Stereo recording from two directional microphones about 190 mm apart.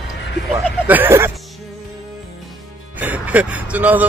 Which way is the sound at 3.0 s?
10° right (ahead or behind).